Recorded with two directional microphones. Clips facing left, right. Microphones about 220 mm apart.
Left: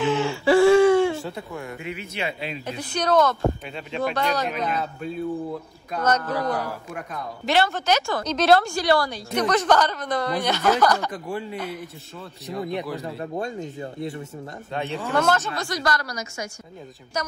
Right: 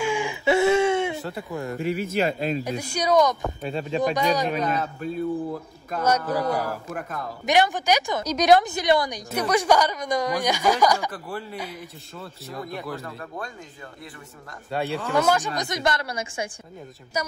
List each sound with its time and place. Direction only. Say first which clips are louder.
0.0 s whimper: left 3 dB; 15° right (ahead or behind)
1.6 s speech: right 7 dB; 40° right (ahead or behind)
2.6 s a woman's voice: even; 10° right (ahead or behind)
3.6 s speech: right 6 dB; 35° right (ahead or behind)
4.0 s a woman's voice: right 1 dB; 15° right (ahead or behind)
4.6 s speech: right 1 dB; centre (ahead or behind)
7.4 s a woman's voice: right 1 dB; 15° right (ahead or behind)
11.1 s a woman's voice: left 3 dB; 15° left (ahead or behind)
11.5 s a woman's voice: left 3 dB; 10° right (ahead or behind)
13.3 s speech: left 7 dB; 25° left (ahead or behind)
15.1 s a woman's voice: even; 15° right (ahead or behind)
17.1 s a woman's voice: even; 10° right (ahead or behind)